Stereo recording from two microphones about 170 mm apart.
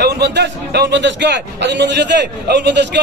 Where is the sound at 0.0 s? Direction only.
75° right (ahead or behind).